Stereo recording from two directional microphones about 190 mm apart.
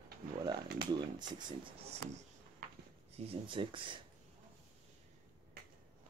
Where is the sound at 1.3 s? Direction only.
25° right (ahead or behind).